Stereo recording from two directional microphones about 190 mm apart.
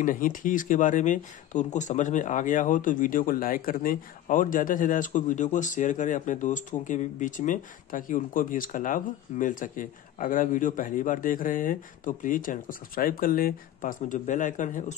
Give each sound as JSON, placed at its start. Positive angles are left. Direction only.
{"t": 0.0, "sound": "speech", "side_deg": 45}